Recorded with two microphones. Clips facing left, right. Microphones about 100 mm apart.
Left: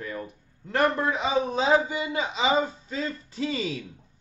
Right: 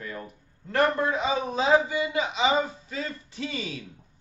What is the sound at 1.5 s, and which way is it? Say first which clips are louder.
Speech: right 3 dB; 30° left (ahead or behind).